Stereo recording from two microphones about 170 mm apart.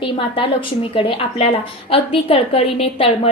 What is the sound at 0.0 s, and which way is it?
A woman's voice, 30° left (ahead or behind).